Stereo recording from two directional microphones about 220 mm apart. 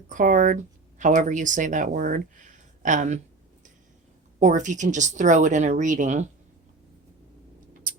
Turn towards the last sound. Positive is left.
turn(degrees=-35)  # may be behind; listen again after turning